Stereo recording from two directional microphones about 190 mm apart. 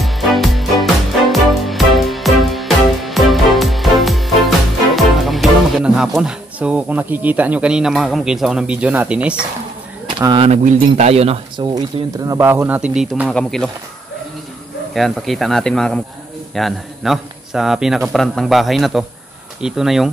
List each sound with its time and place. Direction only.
0.0 s music: centre (ahead or behind)
10.0 s speech: 25° right (ahead or behind); by 13.7 s 5° left (ahead or behind)
15.0 s a man's voice: centre (ahead or behind)